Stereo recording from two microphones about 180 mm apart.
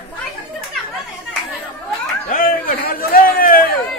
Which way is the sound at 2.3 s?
50° left (ahead or behind).